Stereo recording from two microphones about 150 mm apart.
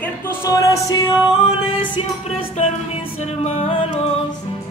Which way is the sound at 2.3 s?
45° left (ahead or behind).